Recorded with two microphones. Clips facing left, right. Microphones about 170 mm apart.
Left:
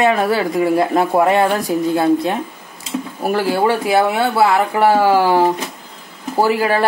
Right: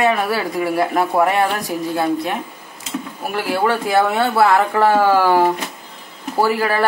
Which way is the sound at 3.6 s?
10° left (ahead or behind).